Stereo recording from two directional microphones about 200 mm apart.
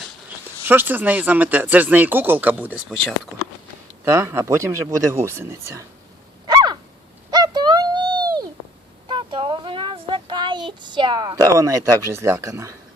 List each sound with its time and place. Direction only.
0.7 s speech: 10° right (ahead or behind)
4.0 s speech: 15° right (ahead or behind)
6.5 s a sound: 20° right (ahead or behind)